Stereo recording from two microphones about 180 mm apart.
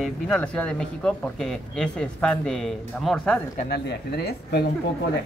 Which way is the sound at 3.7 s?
65° left (ahead or behind).